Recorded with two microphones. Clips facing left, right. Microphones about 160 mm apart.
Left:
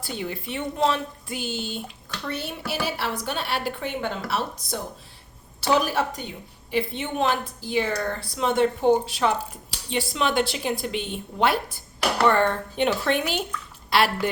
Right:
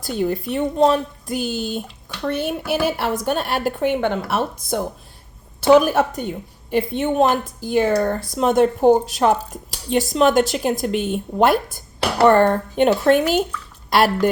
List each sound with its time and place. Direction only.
0.2 s speech: 45° right (ahead or behind)
2.3 s a woman's voice: 55° right (ahead or behind)